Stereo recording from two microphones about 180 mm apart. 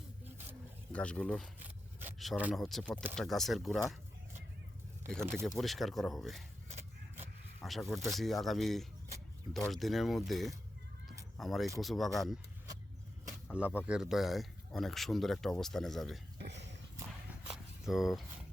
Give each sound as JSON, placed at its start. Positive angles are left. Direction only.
{"t": 0.9, "sound": "speech", "side_deg": 5}
{"t": 5.0, "sound": "speech", "side_deg": 5}
{"t": 6.7, "sound": "vehicle", "side_deg": -40}
{"t": 7.6, "sound": "speech", "side_deg": 0}
{"t": 13.6, "sound": "speech", "side_deg": -10}
{"t": 16.4, "sound": "a sound", "side_deg": -75}
{"t": 17.5, "sound": "a sound", "side_deg": 0}